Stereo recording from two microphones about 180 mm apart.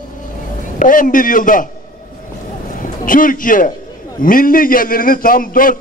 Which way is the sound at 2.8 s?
50° left (ahead or behind).